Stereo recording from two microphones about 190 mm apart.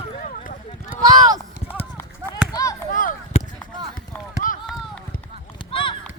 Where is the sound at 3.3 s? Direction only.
30° left (ahead or behind).